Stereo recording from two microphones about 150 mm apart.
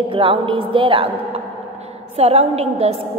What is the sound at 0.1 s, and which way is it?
Speech, 35° right (ahead or behind).